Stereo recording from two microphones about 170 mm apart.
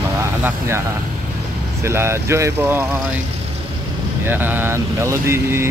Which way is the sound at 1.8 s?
15° right (ahead or behind).